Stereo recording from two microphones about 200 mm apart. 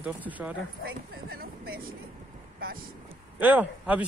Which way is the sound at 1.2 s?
50° right (ahead or behind).